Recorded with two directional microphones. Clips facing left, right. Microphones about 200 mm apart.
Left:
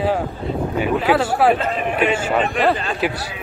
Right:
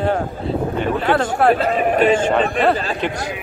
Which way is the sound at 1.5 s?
40° right (ahead or behind).